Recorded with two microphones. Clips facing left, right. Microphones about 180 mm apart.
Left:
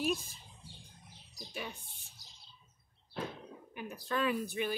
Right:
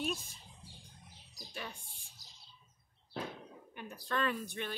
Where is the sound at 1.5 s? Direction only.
5° left (ahead or behind).